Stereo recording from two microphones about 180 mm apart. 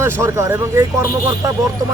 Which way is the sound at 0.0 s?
15° right (ahead or behind).